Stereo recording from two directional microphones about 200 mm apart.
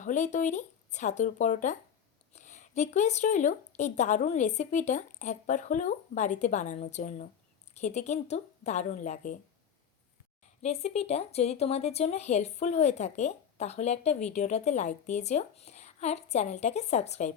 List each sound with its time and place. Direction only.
0.0 s speech: 35° left (ahead or behind)
10.6 s speech: 35° left (ahead or behind)